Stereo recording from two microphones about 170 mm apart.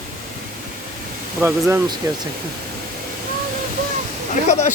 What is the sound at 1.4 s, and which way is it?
Speech, 15° right (ahead or behind).